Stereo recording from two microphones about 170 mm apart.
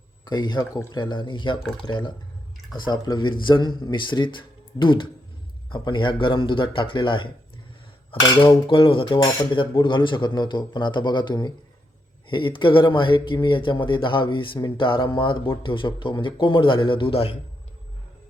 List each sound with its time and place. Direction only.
0.3 s speech: 25° left (ahead or behind)